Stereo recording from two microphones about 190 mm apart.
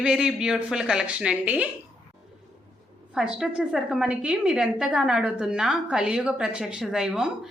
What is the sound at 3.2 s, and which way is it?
A woman's voice, 5° right (ahead or behind).